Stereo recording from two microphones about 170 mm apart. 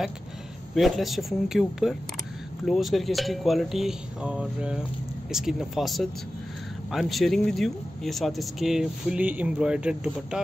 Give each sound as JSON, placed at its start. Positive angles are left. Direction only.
{"t": 0.7, "sound": "speech", "side_deg": 0}